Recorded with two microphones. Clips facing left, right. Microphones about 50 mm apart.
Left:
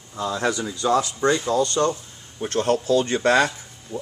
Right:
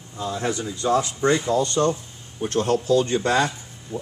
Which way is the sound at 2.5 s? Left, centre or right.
Left.